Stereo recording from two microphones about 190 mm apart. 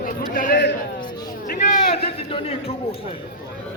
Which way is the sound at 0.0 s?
45° left (ahead or behind).